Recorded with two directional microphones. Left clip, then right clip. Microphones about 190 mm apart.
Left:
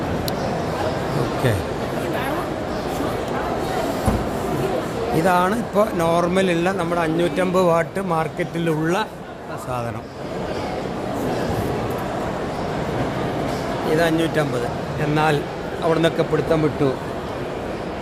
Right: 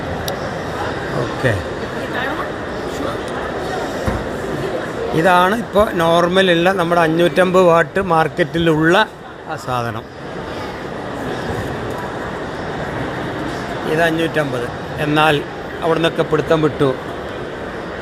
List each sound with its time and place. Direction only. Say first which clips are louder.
5.2 s speech: right 7 dB; 15° right (ahead or behind)
13.9 s speech: right 3 dB; 10° right (ahead or behind)
15.9 s speech: right 3 dB; centre (ahead or behind)